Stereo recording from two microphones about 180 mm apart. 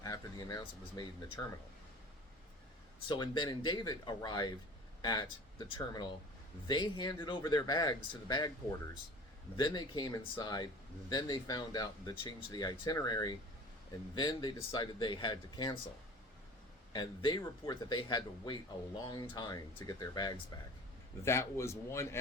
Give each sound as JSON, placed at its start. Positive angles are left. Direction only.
{"t": 0.0, "sound": "speech", "side_deg": 20}
{"t": 3.1, "sound": "speech", "side_deg": 25}
{"t": 9.6, "sound": "speech", "side_deg": 25}
{"t": 16.9, "sound": "a man's voice", "side_deg": 25}